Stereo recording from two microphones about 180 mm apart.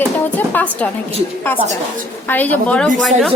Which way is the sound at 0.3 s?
10° left (ahead or behind).